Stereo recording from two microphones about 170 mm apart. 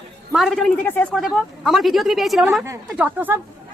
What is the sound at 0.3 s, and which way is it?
A woman's voice, centre (ahead or behind).